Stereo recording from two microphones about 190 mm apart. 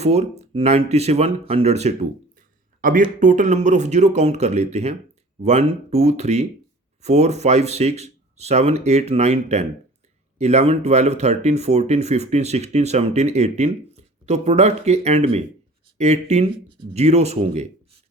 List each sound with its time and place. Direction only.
0.0 s speech: 35° right (ahead or behind)